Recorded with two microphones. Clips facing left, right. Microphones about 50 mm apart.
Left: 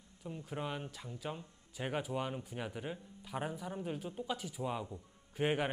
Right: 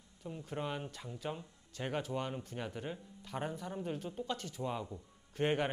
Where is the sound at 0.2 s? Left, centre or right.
Centre.